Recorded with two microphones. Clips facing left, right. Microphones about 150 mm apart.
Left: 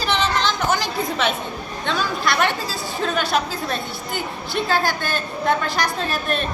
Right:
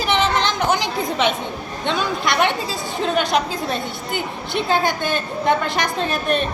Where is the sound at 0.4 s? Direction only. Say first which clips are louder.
Right 1 dB; 20° right (ahead or behind).